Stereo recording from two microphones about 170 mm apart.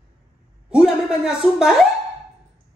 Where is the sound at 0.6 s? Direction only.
5° right (ahead or behind).